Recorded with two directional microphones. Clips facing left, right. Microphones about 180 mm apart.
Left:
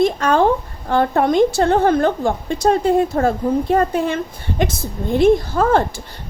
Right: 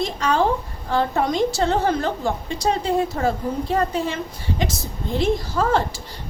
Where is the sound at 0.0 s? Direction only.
55° left (ahead or behind).